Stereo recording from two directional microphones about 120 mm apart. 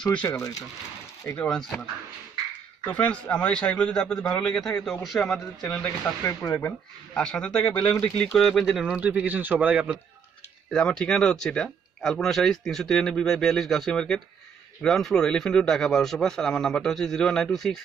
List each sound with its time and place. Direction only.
0.0 s a man's voice: 10° left (ahead or behind)
0.3 s speech: 30° left (ahead or behind)
1.3 s a man's voice: 10° left (ahead or behind)
2.9 s a man's voice: 10° left (ahead or behind)
7.2 s a man's voice: 5° left (ahead or behind); by 9.9 s 10° right (ahead or behind)
10.7 s speech: 5° left (ahead or behind)